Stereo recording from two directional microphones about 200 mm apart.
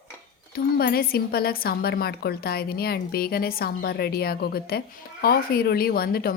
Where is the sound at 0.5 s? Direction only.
50° left (ahead or behind).